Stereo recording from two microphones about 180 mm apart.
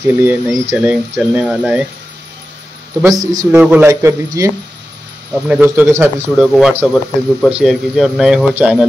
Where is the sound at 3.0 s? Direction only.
20° right (ahead or behind).